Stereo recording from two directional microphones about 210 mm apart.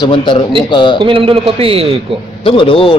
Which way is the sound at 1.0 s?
25° right (ahead or behind).